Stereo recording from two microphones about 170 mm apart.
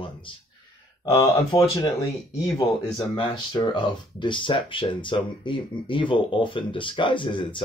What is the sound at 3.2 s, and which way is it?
Speech, 25° left (ahead or behind).